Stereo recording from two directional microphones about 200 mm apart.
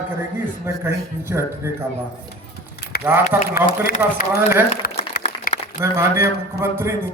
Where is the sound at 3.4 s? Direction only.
45° left (ahead or behind).